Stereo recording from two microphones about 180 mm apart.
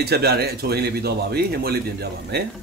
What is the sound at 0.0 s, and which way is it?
Speech, 65° right (ahead or behind).